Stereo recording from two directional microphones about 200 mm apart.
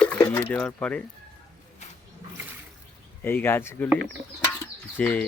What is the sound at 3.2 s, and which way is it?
Speech, 10° left (ahead or behind).